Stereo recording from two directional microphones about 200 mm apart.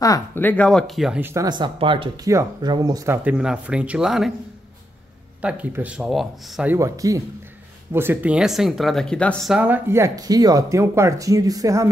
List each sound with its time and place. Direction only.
0.0 s speech: 15° left (ahead or behind); by 3.2 s 15° right (ahead or behind)
3.3 s speech: 5° right (ahead or behind)
5.4 s speech: 5° right (ahead or behind)
9.6 s speech: 10° right (ahead or behind)